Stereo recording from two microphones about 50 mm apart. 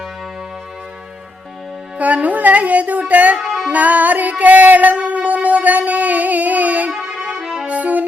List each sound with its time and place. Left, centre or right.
2.0 s music: right
3.3 s music: centre
3.7 s music: right
6.9 s music: centre
7.7 s music: right